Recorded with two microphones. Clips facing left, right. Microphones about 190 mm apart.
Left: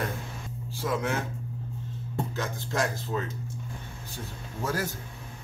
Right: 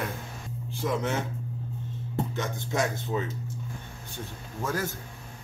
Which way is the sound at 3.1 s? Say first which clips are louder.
Right 2 dB; 15° right (ahead or behind).